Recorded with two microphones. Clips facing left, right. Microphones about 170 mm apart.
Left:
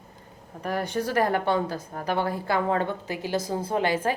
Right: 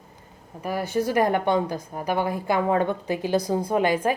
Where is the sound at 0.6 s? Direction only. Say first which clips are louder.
Right 3 dB; 10° right (ahead or behind).